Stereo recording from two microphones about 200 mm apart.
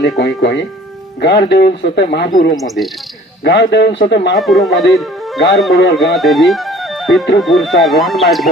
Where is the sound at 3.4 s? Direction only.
55° left (ahead or behind).